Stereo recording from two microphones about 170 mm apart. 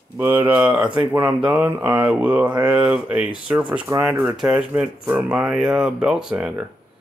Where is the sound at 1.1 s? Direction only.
10° right (ahead or behind).